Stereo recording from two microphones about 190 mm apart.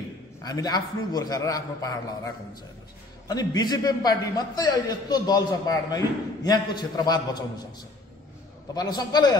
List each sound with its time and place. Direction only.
0.4 s a man's voice: 20° left (ahead or behind)
8.7 s a man's voice: 20° left (ahead or behind)